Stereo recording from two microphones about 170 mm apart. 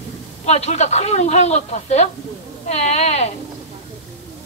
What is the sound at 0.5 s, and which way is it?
Speech, 40° left (ahead or behind).